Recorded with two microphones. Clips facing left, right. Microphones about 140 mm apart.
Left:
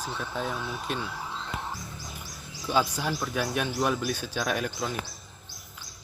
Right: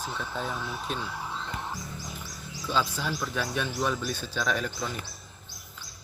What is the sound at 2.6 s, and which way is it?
Speech, 15° left (ahead or behind).